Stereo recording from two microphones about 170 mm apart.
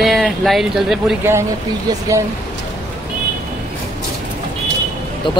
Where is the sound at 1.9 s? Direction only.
20° right (ahead or behind).